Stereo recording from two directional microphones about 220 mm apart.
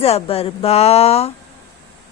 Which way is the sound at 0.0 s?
25° left (ahead or behind).